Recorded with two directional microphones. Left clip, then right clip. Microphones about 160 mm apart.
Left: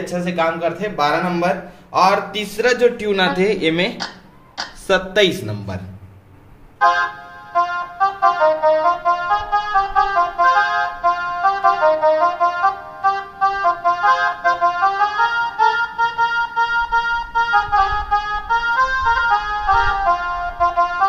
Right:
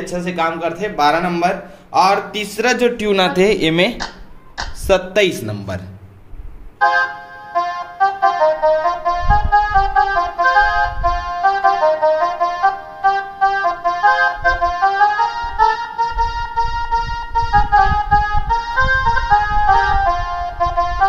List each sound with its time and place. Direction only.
0.0 s speech: centre (ahead or behind); by 1.5 s 25° right (ahead or behind)
1.9 s a man's voice: 15° right (ahead or behind)
6.8 s music: centre (ahead or behind)